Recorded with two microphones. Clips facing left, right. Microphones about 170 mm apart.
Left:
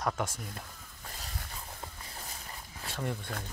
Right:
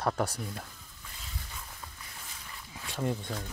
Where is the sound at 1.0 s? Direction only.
45° left (ahead or behind).